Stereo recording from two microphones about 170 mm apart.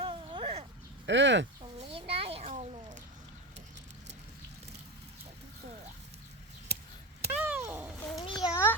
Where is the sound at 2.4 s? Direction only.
50° right (ahead or behind).